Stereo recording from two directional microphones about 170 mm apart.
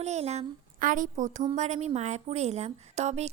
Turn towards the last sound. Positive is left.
turn(degrees=-40)  # may be behind; listen again after turning